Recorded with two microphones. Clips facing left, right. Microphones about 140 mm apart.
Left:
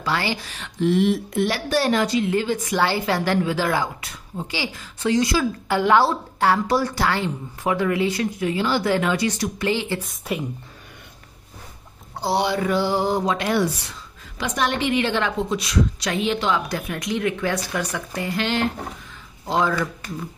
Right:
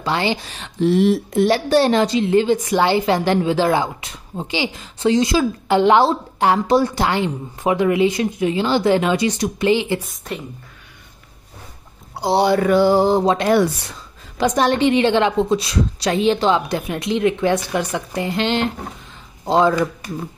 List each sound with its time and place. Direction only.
0.0 s speech: 20° right (ahead or behind)
10.3 s speech: 5° left (ahead or behind)
12.2 s a sound: 10° right (ahead or behind)
12.5 s mantra: 60° right (ahead or behind)
13.0 s a sound: 30° right (ahead or behind)
14.4 s speech: 35° right (ahead or behind)